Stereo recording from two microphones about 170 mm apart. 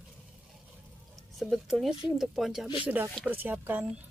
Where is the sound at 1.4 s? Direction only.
Centre (ahead or behind).